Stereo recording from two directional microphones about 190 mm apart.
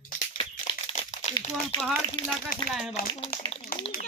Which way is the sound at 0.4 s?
25° left (ahead or behind).